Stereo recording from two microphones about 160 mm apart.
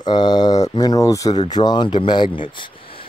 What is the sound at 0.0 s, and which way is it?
Speech, 25° left (ahead or behind).